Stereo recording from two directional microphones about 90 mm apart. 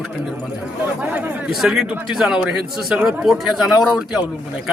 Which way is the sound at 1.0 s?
20° right (ahead or behind).